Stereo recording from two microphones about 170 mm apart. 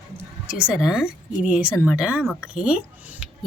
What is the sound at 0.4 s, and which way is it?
A woman's voice, 5° right (ahead or behind).